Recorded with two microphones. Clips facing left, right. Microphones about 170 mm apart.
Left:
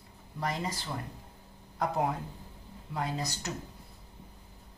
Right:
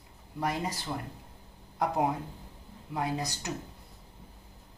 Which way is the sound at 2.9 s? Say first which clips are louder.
Right 2 dB; 10° right (ahead or behind).